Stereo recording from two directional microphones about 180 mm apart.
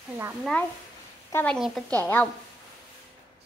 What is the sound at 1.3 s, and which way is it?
Speech, 5° left (ahead or behind).